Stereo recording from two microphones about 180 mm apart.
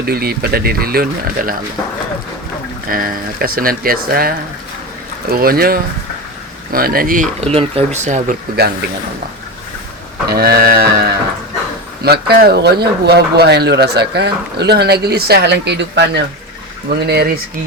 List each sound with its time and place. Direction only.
0.0 s speech: 60° right (ahead or behind)
2.9 s speech: 55° right (ahead or behind)
7.4 s speech: 35° right (ahead or behind)
8.6 s speech: 60° right (ahead or behind)
10.2 s speech: 60° right (ahead or behind)
17.1 s speech: 60° right (ahead or behind)